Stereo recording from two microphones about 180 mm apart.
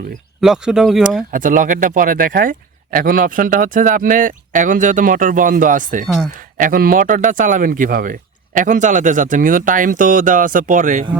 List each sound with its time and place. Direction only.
0.4 s speech: 5° right (ahead or behind)
1.3 s speech: 50° right (ahead or behind)